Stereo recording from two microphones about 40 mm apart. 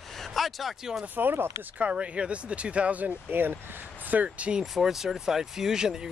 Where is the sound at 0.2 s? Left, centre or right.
Centre.